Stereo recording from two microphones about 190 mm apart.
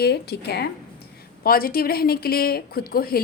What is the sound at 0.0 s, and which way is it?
A woman's voice, 60° left (ahead or behind).